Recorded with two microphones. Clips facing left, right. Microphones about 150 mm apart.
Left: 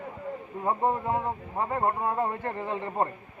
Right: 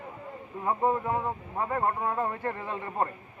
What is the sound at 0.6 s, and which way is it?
Speech, 20° left (ahead or behind).